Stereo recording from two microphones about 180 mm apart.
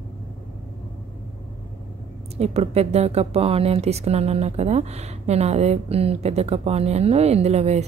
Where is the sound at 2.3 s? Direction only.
35° right (ahead or behind).